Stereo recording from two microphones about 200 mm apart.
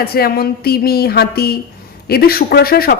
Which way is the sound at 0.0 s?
50° left (ahead or behind).